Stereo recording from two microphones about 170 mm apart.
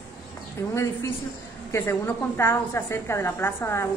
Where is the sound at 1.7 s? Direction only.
15° left (ahead or behind).